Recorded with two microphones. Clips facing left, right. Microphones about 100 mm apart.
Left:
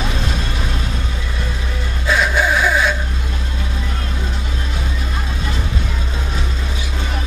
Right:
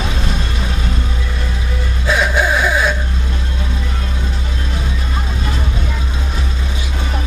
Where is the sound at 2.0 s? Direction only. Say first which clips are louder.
Right 1 dB; 5° right (ahead or behind).